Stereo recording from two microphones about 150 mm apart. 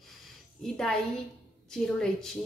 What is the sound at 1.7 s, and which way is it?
Speech, 5° left (ahead or behind).